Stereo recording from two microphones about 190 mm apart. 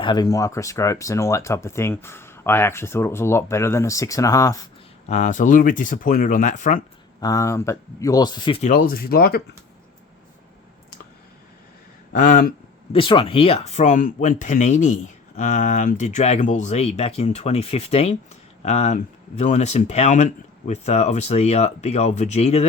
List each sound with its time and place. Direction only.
0.0 s speech: 20° left (ahead or behind)
5.0 s speech: 40° left (ahead or behind)
7.2 s speech: 15° left (ahead or behind)
8.6 s speech: 45° left (ahead or behind)
12.1 s speech: 45° left (ahead or behind)
12.9 s speech: 30° left (ahead or behind)